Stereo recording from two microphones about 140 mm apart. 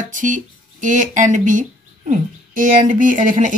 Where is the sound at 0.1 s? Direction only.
65° right (ahead or behind).